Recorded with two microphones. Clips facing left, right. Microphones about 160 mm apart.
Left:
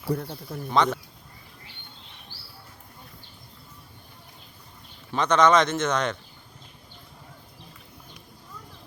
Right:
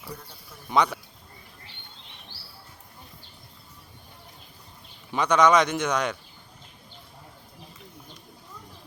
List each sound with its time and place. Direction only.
0.1 s speech: 60° left (ahead or behind)
0.7 s speech: 10° right (ahead or behind)
5.1 s speech: 10° right (ahead or behind)